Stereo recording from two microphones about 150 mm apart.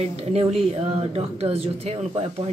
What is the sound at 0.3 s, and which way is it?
Speech, 40° right (ahead or behind).